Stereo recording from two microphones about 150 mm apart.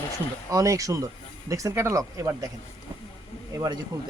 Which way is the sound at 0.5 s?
20° right (ahead or behind).